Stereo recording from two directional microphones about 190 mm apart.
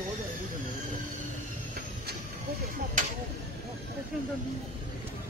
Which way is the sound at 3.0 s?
45° right (ahead or behind).